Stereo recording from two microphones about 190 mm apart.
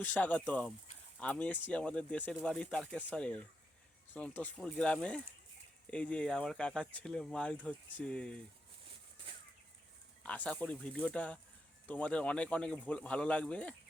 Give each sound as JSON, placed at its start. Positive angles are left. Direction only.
{"t": 0.0, "sound": "speech", "side_deg": 10}
{"t": 10.2, "sound": "speech", "side_deg": 5}